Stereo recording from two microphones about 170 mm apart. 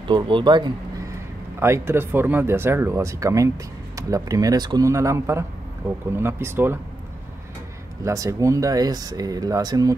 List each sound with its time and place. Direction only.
0.1 s speech: 30° right (ahead or behind)
1.6 s speech: 15° right (ahead or behind)
8.0 s speech: 20° right (ahead or behind)